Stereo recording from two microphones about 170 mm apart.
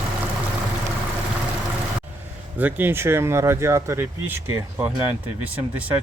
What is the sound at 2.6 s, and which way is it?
Speech, 10° right (ahead or behind).